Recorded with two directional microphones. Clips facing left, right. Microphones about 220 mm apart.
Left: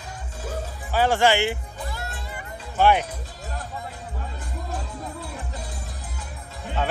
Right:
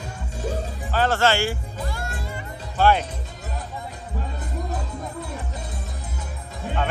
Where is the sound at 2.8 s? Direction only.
15° left (ahead or behind).